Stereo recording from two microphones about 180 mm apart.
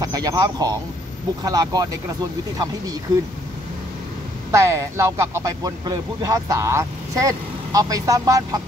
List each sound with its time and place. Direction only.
0.0 s speech: 20° right (ahead or behind)
4.5 s speech: 15° right (ahead or behind)